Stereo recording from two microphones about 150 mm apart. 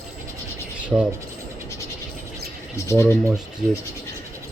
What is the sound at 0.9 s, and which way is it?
Speech, 15° right (ahead or behind).